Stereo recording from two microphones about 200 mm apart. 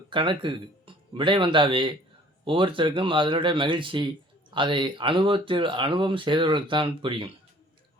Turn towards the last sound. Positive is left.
turn(degrees=-25)  # may be behind; listen again after turning